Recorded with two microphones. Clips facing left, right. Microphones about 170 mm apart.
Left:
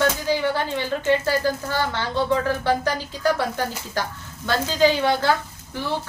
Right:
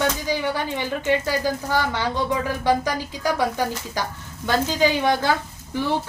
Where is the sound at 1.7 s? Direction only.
15° right (ahead or behind).